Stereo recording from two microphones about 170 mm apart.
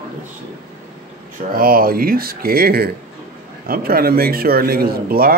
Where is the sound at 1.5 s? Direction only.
60° right (ahead or behind).